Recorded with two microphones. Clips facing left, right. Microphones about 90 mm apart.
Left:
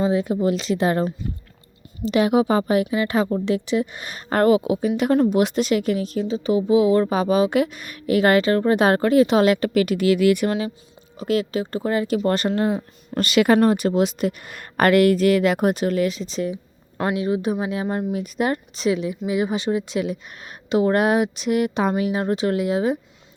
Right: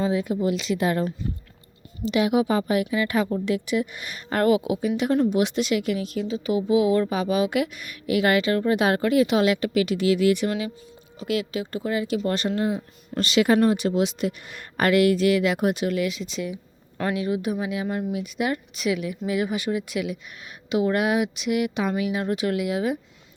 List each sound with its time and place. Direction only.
0.0 s speech: 30° left (ahead or behind)
4.9 s speech: 55° left (ahead or behind)
11.2 s speech: 40° left (ahead or behind)